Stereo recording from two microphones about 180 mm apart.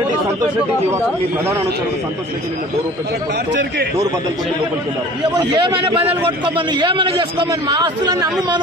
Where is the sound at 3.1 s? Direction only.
65° right (ahead or behind).